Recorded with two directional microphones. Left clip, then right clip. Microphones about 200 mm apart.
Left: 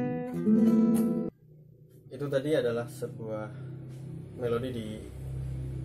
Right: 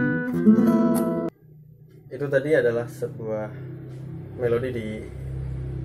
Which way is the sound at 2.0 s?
Centre (ahead or behind).